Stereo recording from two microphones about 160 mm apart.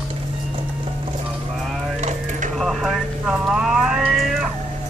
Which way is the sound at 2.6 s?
Centre (ahead or behind).